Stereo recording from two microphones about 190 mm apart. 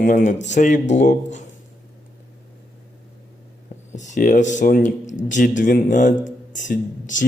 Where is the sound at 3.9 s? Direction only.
40° left (ahead or behind).